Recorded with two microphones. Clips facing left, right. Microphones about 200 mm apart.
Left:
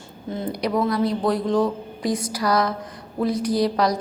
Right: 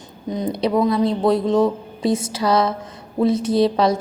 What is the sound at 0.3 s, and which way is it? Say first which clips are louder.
A woman's voice: right 4 dB; 20° right (ahead or behind).